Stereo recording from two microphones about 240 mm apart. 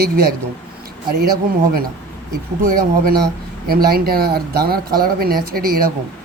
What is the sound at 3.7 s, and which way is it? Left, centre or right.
Speech, right.